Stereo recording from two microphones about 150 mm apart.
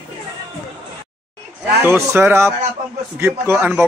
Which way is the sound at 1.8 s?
15° right (ahead or behind).